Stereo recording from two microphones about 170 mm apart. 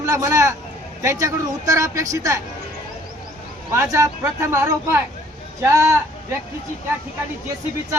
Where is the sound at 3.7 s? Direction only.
15° right (ahead or behind).